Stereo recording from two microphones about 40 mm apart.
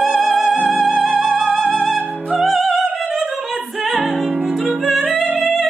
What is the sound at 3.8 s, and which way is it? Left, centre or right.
Music, centre.